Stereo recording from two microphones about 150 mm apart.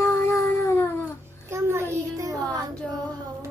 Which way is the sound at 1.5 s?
20° right (ahead or behind).